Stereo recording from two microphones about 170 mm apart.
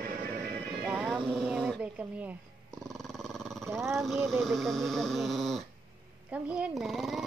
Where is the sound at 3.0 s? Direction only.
Centre (ahead or behind).